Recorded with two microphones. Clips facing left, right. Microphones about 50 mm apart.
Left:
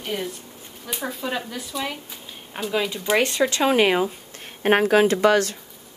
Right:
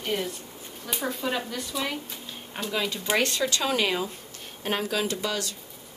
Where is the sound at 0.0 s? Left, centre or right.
Centre.